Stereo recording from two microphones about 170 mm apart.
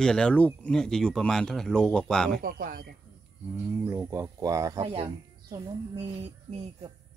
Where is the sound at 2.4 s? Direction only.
60° right (ahead or behind).